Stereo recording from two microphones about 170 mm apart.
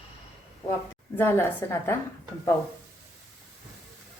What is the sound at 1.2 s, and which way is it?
Speech, 15° left (ahead or behind).